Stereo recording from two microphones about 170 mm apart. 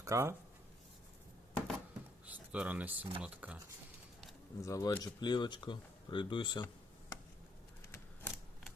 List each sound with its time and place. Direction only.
0.0 s speech: 15° right (ahead or behind)
1.5 s a sound: 5° left (ahead or behind)
2.2 s speech: 10° right (ahead or behind)
4.6 s speech: 20° left (ahead or behind)
7.9 s typewriter: 10° left (ahead or behind)